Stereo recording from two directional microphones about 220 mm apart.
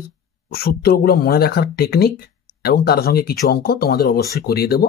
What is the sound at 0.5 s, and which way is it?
Speech, 45° left (ahead or behind).